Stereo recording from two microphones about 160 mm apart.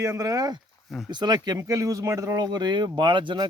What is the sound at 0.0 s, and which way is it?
Speech, 20° right (ahead or behind).